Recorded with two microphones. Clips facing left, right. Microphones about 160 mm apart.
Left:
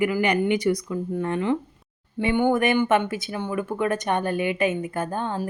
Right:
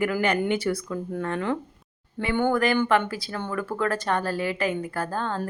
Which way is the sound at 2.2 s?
20° left (ahead or behind).